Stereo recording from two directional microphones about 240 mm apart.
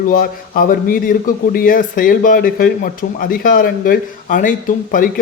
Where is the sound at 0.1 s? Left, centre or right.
Left.